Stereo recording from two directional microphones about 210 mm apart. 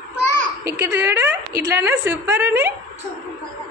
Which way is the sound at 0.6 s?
10° right (ahead or behind).